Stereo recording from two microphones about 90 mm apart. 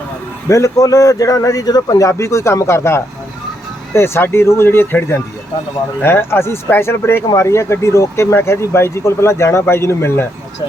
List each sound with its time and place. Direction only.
0.4 s a man's voice: 35° left (ahead or behind)